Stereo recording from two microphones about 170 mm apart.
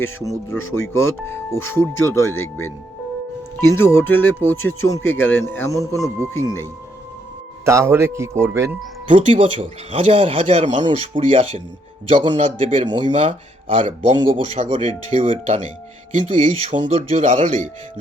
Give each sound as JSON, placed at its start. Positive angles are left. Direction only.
{"t": 0.0, "sound": "speech", "side_deg": 15}
{"t": 7.6, "sound": "speech", "side_deg": -15}
{"t": 9.0, "sound": "speech", "side_deg": -45}
{"t": 9.3, "sound": "speech", "side_deg": -30}